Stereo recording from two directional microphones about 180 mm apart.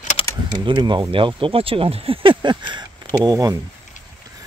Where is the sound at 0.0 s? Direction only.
40° left (ahead or behind).